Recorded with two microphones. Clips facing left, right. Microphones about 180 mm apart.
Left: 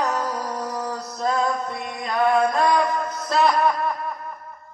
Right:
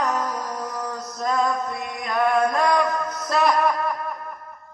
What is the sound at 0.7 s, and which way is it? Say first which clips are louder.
Music: left 2 dB; 30° left (ahead or behind).